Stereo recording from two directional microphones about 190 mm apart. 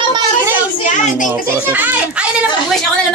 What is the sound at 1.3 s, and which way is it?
Speech, 10° right (ahead or behind).